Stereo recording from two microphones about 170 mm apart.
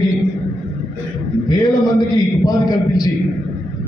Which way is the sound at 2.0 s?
20° left (ahead or behind).